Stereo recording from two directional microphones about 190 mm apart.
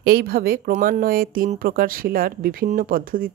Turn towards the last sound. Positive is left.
turn(degrees=-50)  # may be behind; listen again after turning